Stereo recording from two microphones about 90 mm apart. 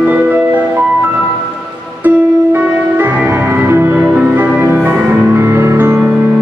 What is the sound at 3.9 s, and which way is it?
Music, 10° right (ahead or behind).